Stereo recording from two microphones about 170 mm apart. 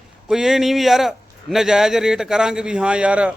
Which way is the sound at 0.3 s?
5° right (ahead or behind).